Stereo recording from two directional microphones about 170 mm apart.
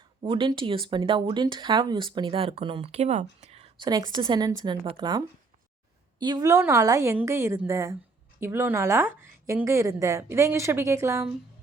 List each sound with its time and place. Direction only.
0.2 s speech: 30° right (ahead or behind)
3.8 s a woman's voice: 25° right (ahead or behind)